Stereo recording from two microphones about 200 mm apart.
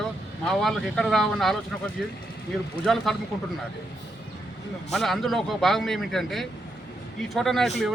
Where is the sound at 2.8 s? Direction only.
Centre (ahead or behind).